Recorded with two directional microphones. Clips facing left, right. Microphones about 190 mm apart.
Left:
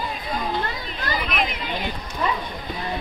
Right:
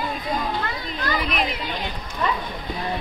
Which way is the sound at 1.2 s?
35° right (ahead or behind).